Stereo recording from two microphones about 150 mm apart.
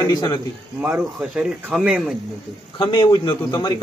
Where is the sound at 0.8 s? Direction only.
15° right (ahead or behind).